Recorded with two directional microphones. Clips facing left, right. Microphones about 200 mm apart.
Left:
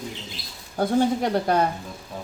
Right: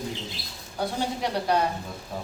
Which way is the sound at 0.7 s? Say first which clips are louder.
Left 8 dB; 50° left (ahead or behind).